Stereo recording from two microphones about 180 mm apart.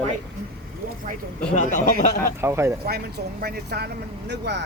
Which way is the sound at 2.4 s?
15° right (ahead or behind).